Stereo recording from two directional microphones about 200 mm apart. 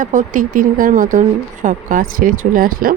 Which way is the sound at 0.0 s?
40° right (ahead or behind).